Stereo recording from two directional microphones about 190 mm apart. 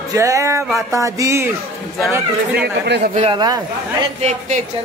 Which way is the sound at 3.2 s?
25° right (ahead or behind).